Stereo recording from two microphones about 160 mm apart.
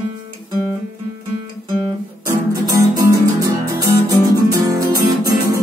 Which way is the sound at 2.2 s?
20° right (ahead or behind).